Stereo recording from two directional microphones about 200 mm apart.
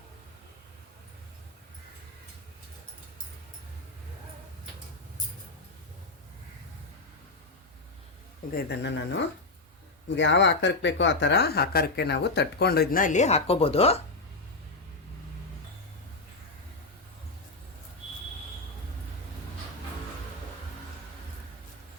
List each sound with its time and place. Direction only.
8.5 s speech: 60° left (ahead or behind)
10.2 s speech: 65° left (ahead or behind); by 14.0 s 30° left (ahead or behind)